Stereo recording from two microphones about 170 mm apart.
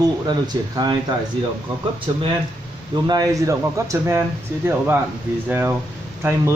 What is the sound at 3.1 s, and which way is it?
Speech, 20° right (ahead or behind).